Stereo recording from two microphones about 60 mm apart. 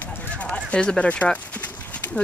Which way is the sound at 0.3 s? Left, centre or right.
Left.